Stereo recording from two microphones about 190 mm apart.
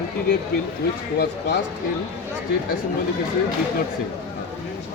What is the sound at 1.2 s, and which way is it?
Speech, 65° left (ahead or behind).